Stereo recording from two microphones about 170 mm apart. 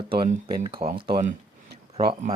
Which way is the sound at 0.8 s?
60° right (ahead or behind).